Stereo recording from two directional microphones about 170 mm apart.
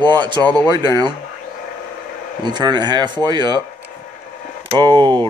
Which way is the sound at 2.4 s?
25° right (ahead or behind).